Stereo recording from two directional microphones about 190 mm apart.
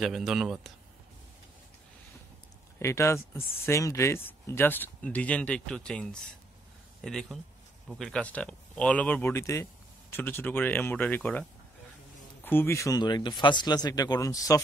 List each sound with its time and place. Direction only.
0.0 s speech: centre (ahead or behind)
2.8 s speech: 15° left (ahead or behind)
12.4 s speech: 10° left (ahead or behind)